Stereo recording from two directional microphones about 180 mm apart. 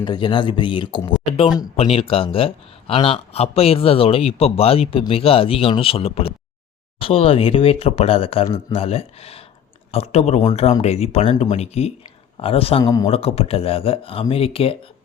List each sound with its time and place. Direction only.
0.0 s a man's voice: 25° left (ahead or behind)
12.8 s speech: 20° left (ahead or behind)
13.1 s a man's voice: 35° left (ahead or behind)